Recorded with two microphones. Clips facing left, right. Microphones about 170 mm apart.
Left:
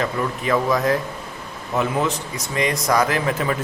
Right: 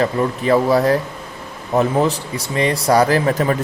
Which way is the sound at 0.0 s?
35° right (ahead or behind).